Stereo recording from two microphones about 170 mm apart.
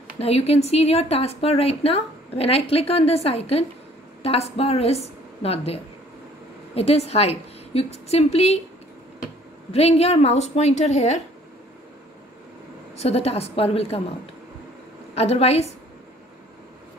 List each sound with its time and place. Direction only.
0.2 s a woman's voice: 35° left (ahead or behind)
9.7 s a woman's voice: 35° left (ahead or behind)
12.9 s a woman's voice: 40° left (ahead or behind)
15.1 s a woman's voice: 35° left (ahead or behind)